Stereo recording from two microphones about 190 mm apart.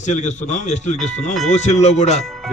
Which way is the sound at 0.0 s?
40° left (ahead or behind).